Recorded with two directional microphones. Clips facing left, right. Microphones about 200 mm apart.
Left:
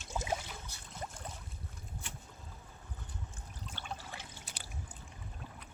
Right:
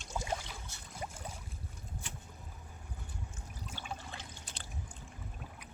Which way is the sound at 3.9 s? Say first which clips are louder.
Even; 10° left (ahead or behind).